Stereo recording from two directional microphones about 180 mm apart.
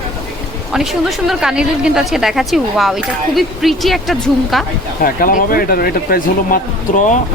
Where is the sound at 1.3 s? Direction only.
5° right (ahead or behind).